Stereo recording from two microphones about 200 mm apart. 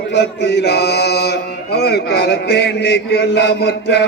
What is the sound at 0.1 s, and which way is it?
Chant, 60° left (ahead or behind).